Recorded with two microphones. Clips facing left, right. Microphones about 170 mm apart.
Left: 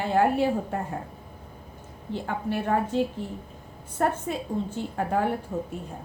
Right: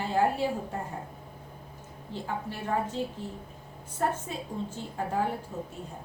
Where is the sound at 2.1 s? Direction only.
65° left (ahead or behind).